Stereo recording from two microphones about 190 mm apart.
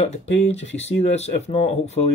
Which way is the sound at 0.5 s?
70° left (ahead or behind).